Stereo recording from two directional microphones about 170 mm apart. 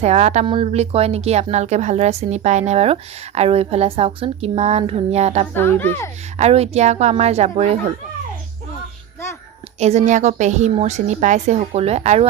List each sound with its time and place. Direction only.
0.0 s a woman's voice: 40° right (ahead or behind)
5.5 s a woman's voice: 15° left (ahead or behind)
6.4 s a woman's voice: 40° right (ahead or behind)
9.8 s a woman's voice: 45° right (ahead or behind)